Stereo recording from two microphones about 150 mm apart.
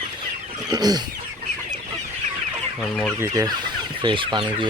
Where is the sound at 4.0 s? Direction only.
30° right (ahead or behind).